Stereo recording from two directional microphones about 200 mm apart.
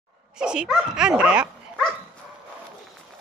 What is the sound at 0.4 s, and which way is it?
Speech, 5° right (ahead or behind).